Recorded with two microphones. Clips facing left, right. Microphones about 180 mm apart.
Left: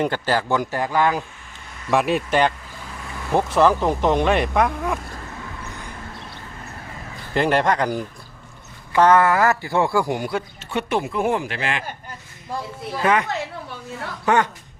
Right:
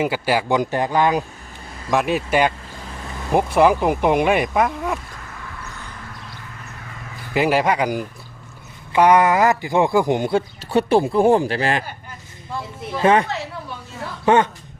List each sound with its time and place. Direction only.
0.0 s speech: 10° right (ahead or behind)
1.9 s speech: centre (ahead or behind)
7.3 s speech: 5° right (ahead or behind); by 10.4 s 25° right (ahead or behind)
10.7 s speech: 35° right (ahead or behind)
13.0 s speech: 30° right (ahead or behind)
14.3 s speech: 25° right (ahead or behind)